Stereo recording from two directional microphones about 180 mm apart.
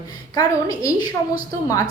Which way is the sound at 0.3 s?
20° left (ahead or behind).